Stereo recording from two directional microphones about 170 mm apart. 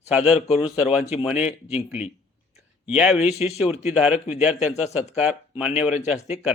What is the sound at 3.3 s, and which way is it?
Speech, 40° left (ahead or behind).